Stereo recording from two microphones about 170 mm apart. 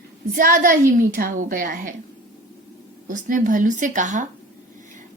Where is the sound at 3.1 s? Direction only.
50° right (ahead or behind).